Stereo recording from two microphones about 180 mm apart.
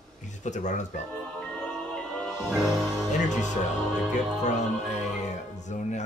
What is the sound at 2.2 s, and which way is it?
Music, centre (ahead or behind).